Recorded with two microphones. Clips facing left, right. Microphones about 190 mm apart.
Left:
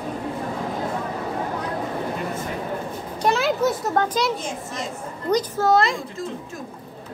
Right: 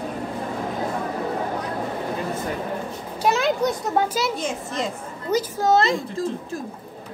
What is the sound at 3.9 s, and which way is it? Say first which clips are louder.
Speech: left 1 dB; 5° right (ahead or behind).